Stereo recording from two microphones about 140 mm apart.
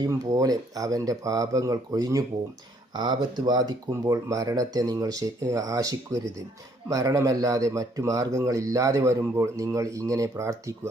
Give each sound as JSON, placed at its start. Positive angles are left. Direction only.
{"t": 0.0, "sound": "speech", "side_deg": -25}